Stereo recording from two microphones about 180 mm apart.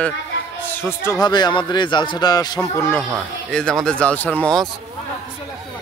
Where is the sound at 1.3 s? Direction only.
25° left (ahead or behind).